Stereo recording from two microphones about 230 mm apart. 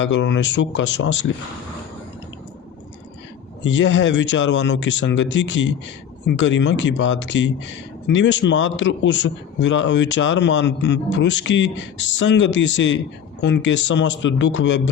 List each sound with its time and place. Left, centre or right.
0.0 s a man's voice: left
3.6 s a man's voice: left